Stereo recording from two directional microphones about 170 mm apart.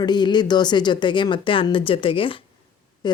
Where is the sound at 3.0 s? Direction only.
25° left (ahead or behind).